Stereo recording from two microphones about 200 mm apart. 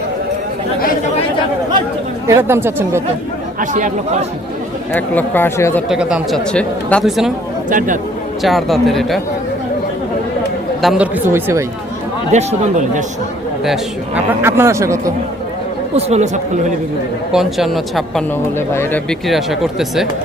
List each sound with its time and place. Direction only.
2.2 s speech: 15° right (ahead or behind)
3.6 s speech: 40° right (ahead or behind)
4.9 s speech: 10° left (ahead or behind)
5.9 s speech: 5° right (ahead or behind)
7.7 s speech: 40° right (ahead or behind)
8.4 s speech: centre (ahead or behind)
10.8 s speech: 5° right (ahead or behind)
12.3 s speech: 35° right (ahead or behind)
14.4 s speech: 10° right (ahead or behind)
16.0 s speech: 30° right (ahead or behind)
17.3 s speech: centre (ahead or behind)
18.7 s speech: 10° left (ahead or behind)
19.3 s speech: centre (ahead or behind)